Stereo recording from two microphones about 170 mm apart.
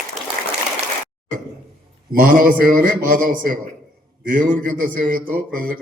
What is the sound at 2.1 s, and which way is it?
A man's voice, 55° right (ahead or behind).